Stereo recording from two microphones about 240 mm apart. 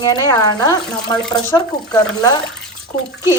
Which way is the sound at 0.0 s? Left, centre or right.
Centre.